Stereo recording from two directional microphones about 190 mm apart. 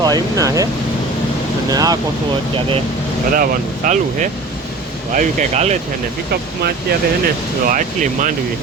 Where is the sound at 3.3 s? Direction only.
50° right (ahead or behind).